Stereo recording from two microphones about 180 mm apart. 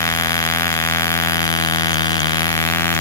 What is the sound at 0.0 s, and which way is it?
Vehicle, 15° left (ahead or behind).